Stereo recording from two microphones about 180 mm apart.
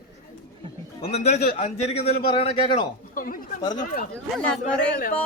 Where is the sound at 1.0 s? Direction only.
35° left (ahead or behind).